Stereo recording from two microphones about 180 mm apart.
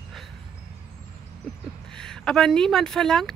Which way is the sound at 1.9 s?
5° left (ahead or behind).